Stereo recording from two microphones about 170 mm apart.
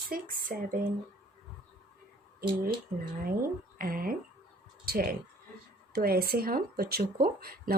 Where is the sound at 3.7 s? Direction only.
55° right (ahead or behind).